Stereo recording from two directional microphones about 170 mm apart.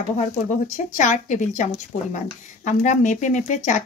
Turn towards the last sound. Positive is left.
turn(degrees=50)  # may be behind; listen again after turning